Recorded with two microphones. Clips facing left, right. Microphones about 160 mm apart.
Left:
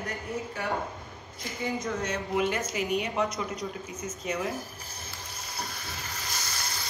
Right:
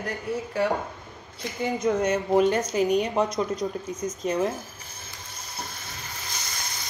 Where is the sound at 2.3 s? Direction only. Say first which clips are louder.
Right 7 dB; 40° right (ahead or behind).